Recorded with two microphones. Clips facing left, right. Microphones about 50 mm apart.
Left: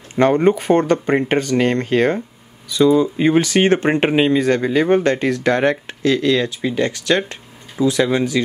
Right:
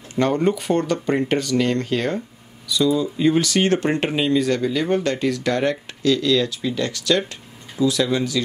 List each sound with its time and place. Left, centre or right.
0.1 s speech: left